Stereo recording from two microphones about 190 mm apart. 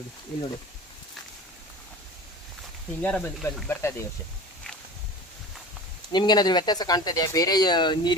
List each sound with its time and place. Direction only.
3.0 s speech: 10° left (ahead or behind)
6.1 s speech: 20° left (ahead or behind)